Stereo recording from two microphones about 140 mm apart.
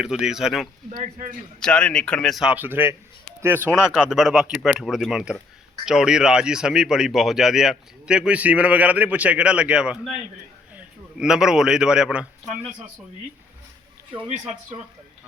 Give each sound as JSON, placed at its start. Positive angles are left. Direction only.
{"t": 0.0, "sound": "speech", "side_deg": -5}
{"t": 0.9, "sound": "speech", "side_deg": -65}
{"t": 1.6, "sound": "a man's voice", "side_deg": 5}